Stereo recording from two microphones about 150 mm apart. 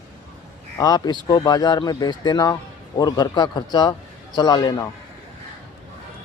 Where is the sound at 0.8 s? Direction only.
25° left (ahead or behind).